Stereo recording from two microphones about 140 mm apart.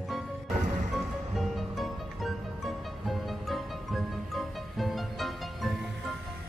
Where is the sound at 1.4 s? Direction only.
Centre (ahead or behind).